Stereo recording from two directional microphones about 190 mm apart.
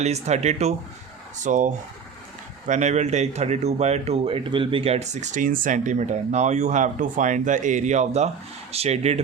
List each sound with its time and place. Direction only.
0.0 s speech: 35° right (ahead or behind)